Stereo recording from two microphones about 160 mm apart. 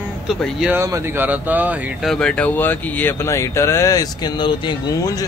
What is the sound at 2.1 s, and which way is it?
Speech, 5° left (ahead or behind).